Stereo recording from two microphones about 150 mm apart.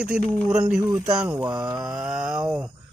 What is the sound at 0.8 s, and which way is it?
Speech, 20° right (ahead or behind).